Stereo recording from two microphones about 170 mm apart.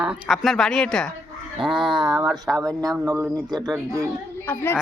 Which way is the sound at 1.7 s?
30° right (ahead or behind).